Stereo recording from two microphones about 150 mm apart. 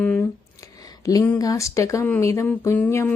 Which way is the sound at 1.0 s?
20° left (ahead or behind).